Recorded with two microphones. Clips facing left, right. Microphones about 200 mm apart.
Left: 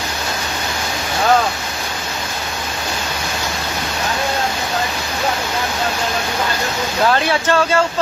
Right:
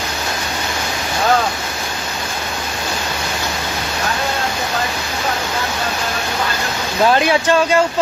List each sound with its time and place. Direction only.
7.1 s speech: 15° right (ahead or behind)